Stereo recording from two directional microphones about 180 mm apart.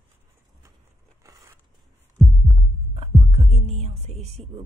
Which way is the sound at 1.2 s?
15° right (ahead or behind).